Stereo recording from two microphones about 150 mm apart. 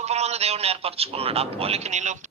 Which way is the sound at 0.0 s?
45° right (ahead or behind).